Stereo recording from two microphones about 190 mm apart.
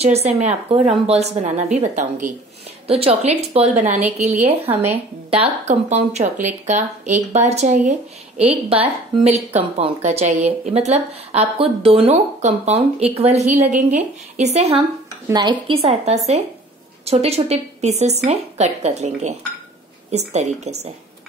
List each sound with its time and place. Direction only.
0.0 s a woman's voice: 35° right (ahead or behind)
15.2 s a woman's voice: 20° right (ahead or behind)